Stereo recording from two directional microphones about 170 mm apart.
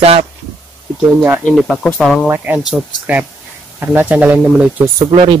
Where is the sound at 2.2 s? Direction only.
10° right (ahead or behind).